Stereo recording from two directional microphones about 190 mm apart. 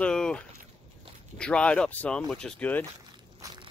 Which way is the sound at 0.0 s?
5° left (ahead or behind).